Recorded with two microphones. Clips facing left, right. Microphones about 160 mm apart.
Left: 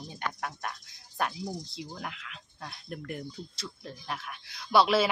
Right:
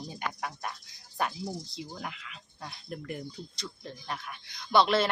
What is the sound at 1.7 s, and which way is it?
Speech, centre (ahead or behind).